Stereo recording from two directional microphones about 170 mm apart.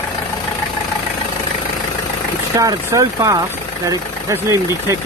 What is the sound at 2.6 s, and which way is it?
Speech, 20° right (ahead or behind).